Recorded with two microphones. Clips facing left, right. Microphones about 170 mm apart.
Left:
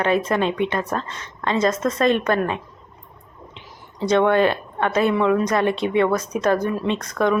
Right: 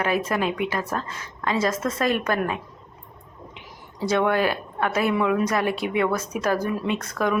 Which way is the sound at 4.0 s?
10° right (ahead or behind).